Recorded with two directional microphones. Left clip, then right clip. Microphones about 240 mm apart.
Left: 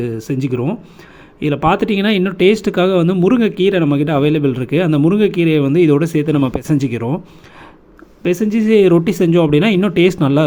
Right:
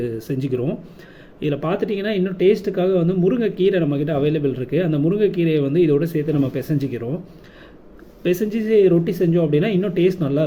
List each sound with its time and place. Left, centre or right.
0.0 s speech: left
8.2 s speech: left